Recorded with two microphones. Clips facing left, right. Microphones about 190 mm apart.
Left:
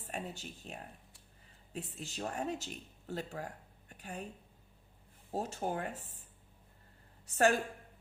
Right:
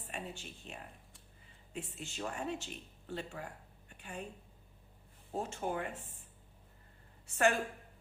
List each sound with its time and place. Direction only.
0.1 s speech: 40° left (ahead or behind)
3.9 s a sound: 40° left (ahead or behind)
5.4 s speech: 35° left (ahead or behind)
7.3 s a woman's voice: 35° left (ahead or behind)